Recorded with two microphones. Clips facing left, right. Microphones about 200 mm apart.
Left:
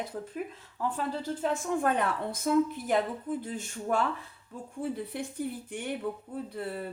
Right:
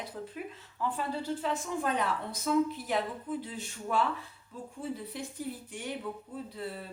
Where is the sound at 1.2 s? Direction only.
50° left (ahead or behind).